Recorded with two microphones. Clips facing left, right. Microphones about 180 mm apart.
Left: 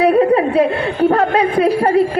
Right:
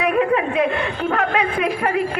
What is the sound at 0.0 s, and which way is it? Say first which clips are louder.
A man's voice: left 6 dB; 35° left (ahead or behind).